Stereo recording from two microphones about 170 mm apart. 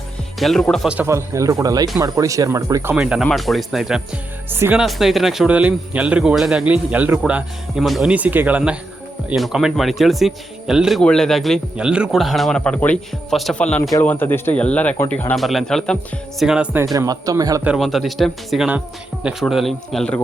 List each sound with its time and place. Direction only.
0.3 s speech: centre (ahead or behind); by 2.9 s 20° right (ahead or behind)
2.9 s speech: 5° right (ahead or behind)
4.5 s speech: 15° right (ahead or behind)
4.8 s speech: centre (ahead or behind)
16.8 s speech: 20° right (ahead or behind)
17.6 s speech: 5° right (ahead or behind)